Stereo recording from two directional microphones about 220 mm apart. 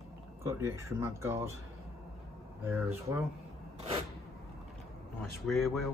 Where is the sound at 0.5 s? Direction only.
10° right (ahead or behind).